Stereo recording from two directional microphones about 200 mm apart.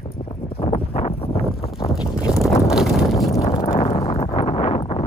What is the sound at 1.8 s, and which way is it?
Wind noise, 25° left (ahead or behind).